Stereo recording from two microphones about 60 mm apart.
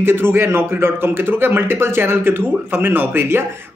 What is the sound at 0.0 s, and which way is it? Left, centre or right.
Speech, right.